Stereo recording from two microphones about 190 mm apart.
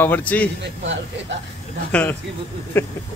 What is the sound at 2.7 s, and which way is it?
Speech, 10° left (ahead or behind).